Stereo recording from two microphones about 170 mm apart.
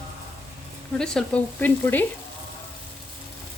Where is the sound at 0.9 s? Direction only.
5° left (ahead or behind).